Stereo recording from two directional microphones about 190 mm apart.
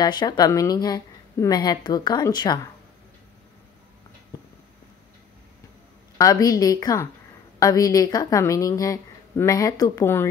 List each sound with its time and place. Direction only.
0.0 s a woman's voice: 20° left (ahead or behind)
6.1 s a woman's voice: 20° left (ahead or behind)